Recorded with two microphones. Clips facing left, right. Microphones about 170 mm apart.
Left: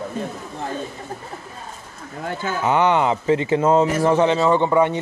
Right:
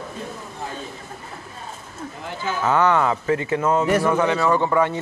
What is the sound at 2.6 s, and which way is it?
Speech, 20° left (ahead or behind).